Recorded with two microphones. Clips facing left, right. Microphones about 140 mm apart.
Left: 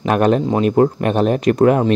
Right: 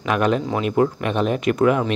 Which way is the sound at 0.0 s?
40° left (ahead or behind).